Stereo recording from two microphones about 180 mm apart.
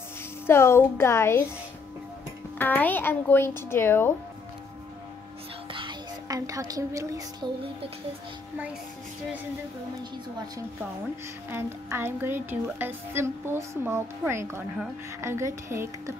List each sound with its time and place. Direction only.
0.5 s a child's voice: 15° left (ahead or behind)
2.6 s a child's voice: 10° left (ahead or behind)
5.7 s speech: 25° right (ahead or behind)
11.5 s speech: 15° right (ahead or behind)